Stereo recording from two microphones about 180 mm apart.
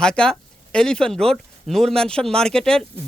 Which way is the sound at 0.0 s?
5° left (ahead or behind).